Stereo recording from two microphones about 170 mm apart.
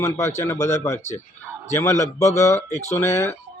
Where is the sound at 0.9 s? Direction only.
45° left (ahead or behind).